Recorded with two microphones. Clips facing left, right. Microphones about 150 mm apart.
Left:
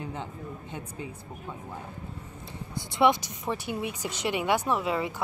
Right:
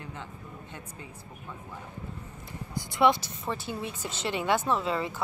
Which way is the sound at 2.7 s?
20° left (ahead or behind).